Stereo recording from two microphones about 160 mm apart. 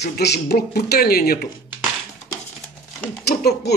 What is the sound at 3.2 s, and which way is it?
Speech, 85° left.